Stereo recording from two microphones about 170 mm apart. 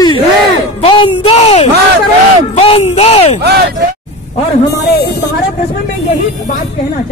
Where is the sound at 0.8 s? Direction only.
30° left (ahead or behind).